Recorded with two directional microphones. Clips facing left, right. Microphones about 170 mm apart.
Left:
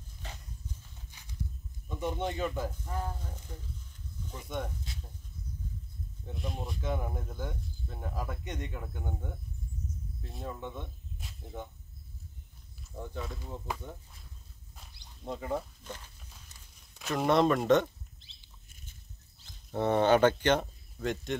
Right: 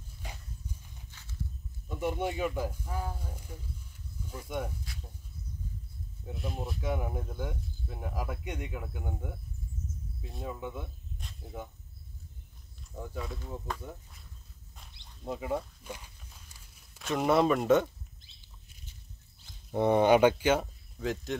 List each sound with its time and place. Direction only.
0.2 s horse: 10° right (ahead or behind)
1.1 s horse: 15° left (ahead or behind)
1.9 s speech: 10° right (ahead or behind)
4.9 s snake: 25° left (ahead or behind)
6.2 s speech: centre (ahead or behind)
12.9 s speech: centre (ahead or behind)
15.2 s speech: 5° right (ahead or behind)
19.7 s speech: 15° right (ahead or behind)